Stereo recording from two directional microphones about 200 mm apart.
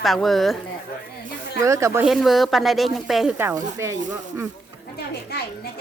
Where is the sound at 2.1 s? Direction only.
Centre (ahead or behind).